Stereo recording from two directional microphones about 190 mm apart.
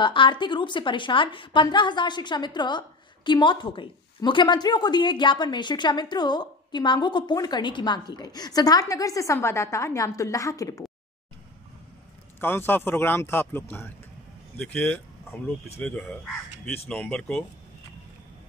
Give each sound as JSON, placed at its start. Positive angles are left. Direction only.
{"t": 0.0, "sound": "a woman's voice", "side_deg": 25}
{"t": 12.4, "sound": "speech", "side_deg": 10}